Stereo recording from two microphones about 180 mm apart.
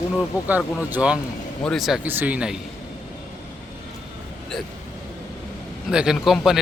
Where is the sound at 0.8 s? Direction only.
10° right (ahead or behind).